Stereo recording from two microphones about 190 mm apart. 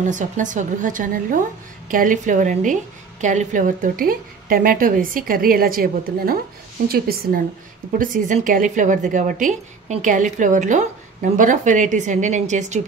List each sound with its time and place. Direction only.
0.0 s a woman's voice: 40° right (ahead or behind)